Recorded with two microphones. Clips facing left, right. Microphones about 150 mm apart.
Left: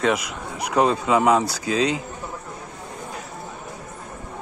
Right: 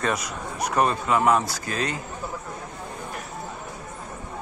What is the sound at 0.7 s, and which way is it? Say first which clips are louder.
Speech: left 4 dB; 90° left.